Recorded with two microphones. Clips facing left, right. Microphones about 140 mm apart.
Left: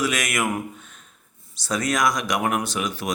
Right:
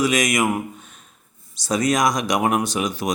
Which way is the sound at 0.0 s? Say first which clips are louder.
Right 5 dB; 15° right (ahead or behind).